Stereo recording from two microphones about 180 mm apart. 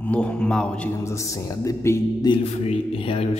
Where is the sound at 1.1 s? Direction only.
15° left (ahead or behind).